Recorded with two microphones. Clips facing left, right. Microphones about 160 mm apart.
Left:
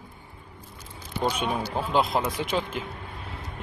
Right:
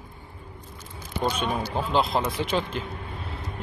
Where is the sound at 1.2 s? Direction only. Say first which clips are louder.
Even; 10° left (ahead or behind).